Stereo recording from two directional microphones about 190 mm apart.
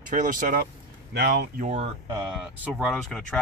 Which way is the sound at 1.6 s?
35° right (ahead or behind).